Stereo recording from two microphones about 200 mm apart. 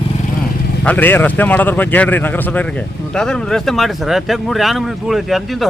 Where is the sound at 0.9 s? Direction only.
10° left (ahead or behind).